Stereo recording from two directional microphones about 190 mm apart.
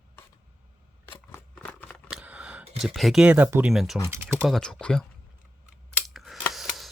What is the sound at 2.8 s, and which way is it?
Speech, centre (ahead or behind).